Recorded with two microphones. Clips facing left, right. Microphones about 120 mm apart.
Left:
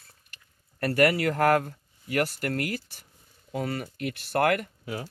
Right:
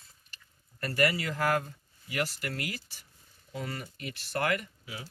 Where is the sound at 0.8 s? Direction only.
60° left (ahead or behind).